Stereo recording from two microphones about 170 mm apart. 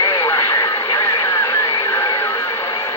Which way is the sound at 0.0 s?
15° left (ahead or behind).